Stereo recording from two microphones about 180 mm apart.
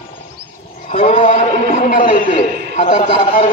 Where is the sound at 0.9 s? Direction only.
35° left (ahead or behind).